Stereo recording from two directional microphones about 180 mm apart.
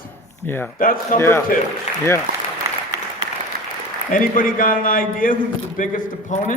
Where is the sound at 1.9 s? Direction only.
40° left (ahead or behind).